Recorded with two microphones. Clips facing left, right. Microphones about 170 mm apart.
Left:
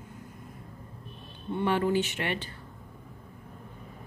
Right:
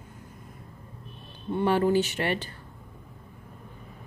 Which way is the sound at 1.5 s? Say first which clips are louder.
Right 3 dB; 35° right (ahead or behind).